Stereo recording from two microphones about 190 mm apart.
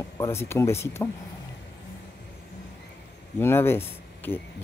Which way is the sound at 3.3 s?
10° left (ahead or behind).